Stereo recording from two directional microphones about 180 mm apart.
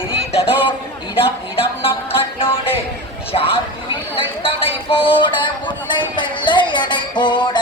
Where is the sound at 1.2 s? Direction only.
30° left (ahead or behind).